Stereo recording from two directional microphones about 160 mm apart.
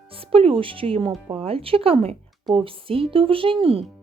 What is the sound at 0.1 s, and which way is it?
Speech, 35° right (ahead or behind).